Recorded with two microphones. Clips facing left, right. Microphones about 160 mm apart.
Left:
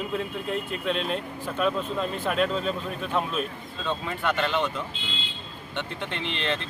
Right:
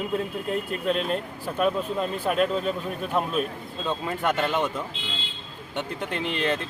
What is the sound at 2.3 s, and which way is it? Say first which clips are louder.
Speech: right 2 dB; 5° right (ahead or behind).